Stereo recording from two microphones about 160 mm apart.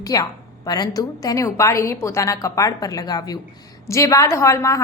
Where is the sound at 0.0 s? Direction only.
20° left (ahead or behind).